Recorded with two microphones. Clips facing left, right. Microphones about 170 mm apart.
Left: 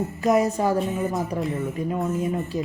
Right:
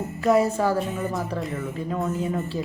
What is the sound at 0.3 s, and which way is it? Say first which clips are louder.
Speech: even; 15° left (ahead or behind).